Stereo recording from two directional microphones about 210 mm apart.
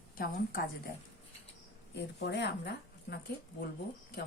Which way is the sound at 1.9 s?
55° left (ahead or behind).